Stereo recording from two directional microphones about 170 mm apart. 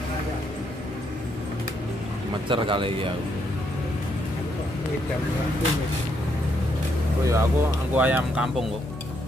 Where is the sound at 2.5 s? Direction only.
30° right (ahead or behind).